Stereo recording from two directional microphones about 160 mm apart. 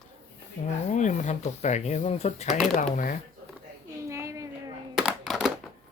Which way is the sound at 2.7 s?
55° left (ahead or behind).